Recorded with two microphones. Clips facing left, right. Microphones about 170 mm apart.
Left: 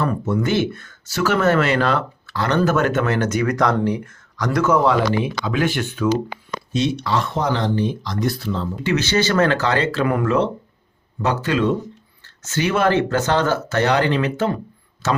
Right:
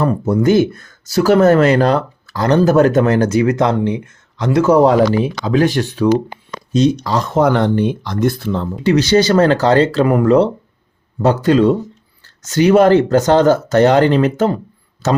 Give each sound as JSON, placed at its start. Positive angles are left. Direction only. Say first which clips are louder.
{"t": 0.0, "sound": "speech", "louder": "right 6 dB", "side_deg": -40}
{"t": 7.4, "sound": "speech", "louder": "right 7 dB", "side_deg": -60}
{"t": 8.8, "sound": "speech", "louder": "right 8 dB", "side_deg": -35}